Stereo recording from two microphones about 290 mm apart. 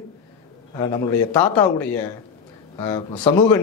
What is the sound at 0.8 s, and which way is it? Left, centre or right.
Speech, centre.